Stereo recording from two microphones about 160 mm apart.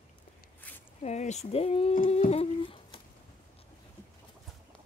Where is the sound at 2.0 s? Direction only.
40° left (ahead or behind).